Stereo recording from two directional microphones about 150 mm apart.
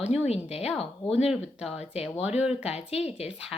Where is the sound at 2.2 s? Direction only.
10° right (ahead or behind).